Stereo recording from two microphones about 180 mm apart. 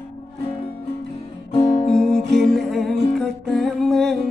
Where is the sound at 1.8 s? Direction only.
Centre (ahead or behind).